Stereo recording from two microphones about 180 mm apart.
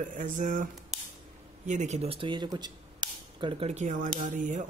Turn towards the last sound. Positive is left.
turn(degrees=-45)  # may be behind; listen again after turning